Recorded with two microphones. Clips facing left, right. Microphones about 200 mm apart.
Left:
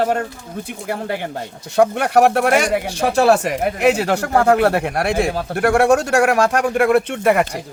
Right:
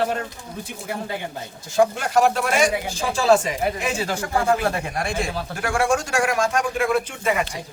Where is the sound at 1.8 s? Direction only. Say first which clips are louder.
Left 4 dB; 65° left (ahead or behind).